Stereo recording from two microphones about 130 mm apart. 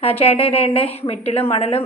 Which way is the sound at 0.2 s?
50° left (ahead or behind).